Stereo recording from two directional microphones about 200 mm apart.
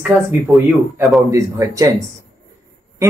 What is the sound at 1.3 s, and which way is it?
Speech, 15° right (ahead or behind).